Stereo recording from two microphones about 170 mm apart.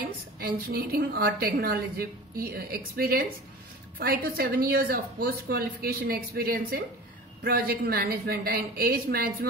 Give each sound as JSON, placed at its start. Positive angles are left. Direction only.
{"t": 0.4, "sound": "a woman's voice", "side_deg": -65}